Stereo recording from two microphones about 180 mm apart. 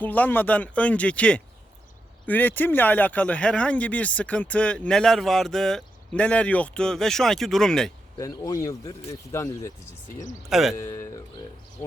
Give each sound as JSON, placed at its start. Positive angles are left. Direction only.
{"t": 0.0, "sound": "speech", "side_deg": 10}
{"t": 8.2, "sound": "speech", "side_deg": 20}
{"t": 10.5, "sound": "speech", "side_deg": 0}
{"t": 10.8, "sound": "speech", "side_deg": 15}